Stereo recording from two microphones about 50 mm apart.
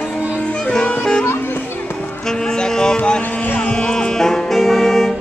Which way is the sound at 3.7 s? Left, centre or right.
Centre.